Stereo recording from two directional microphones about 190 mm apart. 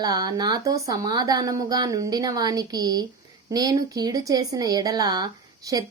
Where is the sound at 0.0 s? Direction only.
20° right (ahead or behind).